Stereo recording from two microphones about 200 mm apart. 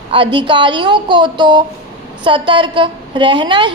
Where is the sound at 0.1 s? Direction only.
25° right (ahead or behind).